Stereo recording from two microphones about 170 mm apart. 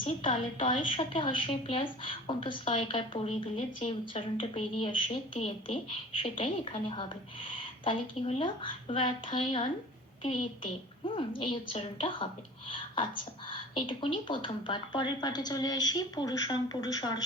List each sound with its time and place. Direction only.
0.0 s a woman's voice: 30° left (ahead or behind)